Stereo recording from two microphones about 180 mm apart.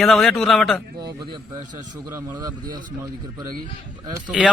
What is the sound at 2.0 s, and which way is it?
Speech, 20° right (ahead or behind).